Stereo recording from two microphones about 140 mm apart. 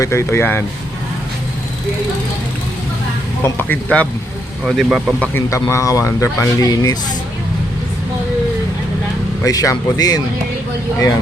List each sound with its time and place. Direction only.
0.0 s speech: 20° left (ahead or behind)
3.4 s speech: 15° left (ahead or behind)
4.6 s speech: 5° right (ahead or behind)
5.2 s speech: 15° left (ahead or behind)
9.4 s speech: 25° left (ahead or behind)